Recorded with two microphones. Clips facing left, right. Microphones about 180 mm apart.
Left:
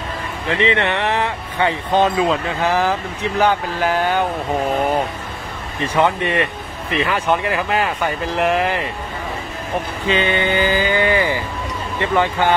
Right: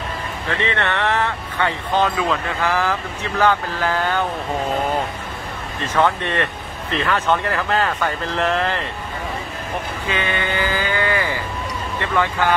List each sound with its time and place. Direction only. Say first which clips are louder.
0.5 s speech: left 5 dB; 20° left (ahead or behind)
5.9 s a man's voice: left 2 dB; 15° left (ahead or behind)
10.0 s vehicle: left 6 dB; 20° left (ahead or behind)
12.0 s speech: left 3 dB; 20° left (ahead or behind)